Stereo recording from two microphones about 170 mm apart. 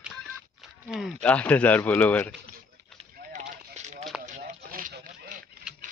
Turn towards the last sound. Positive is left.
turn(degrees=-50)  # may be behind; listen again after turning